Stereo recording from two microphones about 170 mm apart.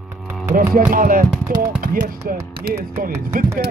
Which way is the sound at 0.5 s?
55° right (ahead or behind).